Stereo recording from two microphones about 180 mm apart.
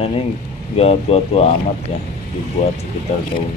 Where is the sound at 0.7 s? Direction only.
35° left (ahead or behind).